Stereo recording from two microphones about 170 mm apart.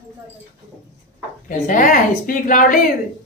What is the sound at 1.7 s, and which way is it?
A woman's voice, 50° left (ahead or behind).